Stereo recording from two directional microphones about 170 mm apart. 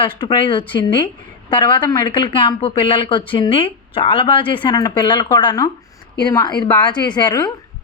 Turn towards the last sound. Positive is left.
turn(degrees=25)  # may be behind; listen again after turning